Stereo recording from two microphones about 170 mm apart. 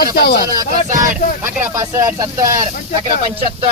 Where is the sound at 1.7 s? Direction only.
20° right (ahead or behind).